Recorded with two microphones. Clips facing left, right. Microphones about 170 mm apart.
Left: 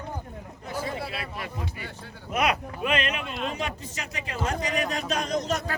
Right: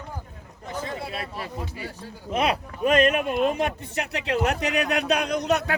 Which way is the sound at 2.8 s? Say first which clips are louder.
Right 9 dB; 45° right (ahead or behind).